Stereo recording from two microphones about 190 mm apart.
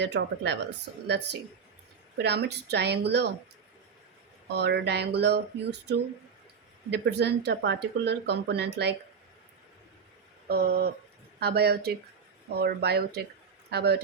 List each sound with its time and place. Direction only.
0.0 s speech: 65° right (ahead or behind)
4.4 s speech: 60° right (ahead or behind)
6.9 s speech: 60° right (ahead or behind)
10.5 s speech: 55° right (ahead or behind)